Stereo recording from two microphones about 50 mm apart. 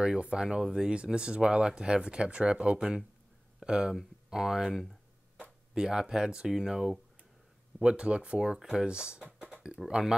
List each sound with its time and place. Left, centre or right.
0.0 s speech: centre
9.4 s a sound: centre
9.8 s speech: centre